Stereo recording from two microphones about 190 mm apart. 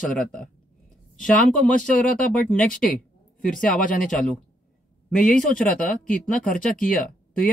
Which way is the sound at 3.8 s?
45° left (ahead or behind).